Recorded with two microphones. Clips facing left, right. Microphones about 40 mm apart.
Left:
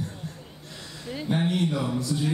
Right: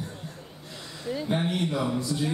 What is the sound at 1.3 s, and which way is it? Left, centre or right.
Speech, centre.